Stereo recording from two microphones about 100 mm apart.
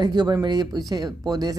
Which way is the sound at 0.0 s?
45° right (ahead or behind).